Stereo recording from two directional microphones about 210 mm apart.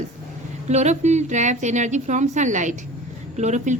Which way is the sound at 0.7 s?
30° right (ahead or behind).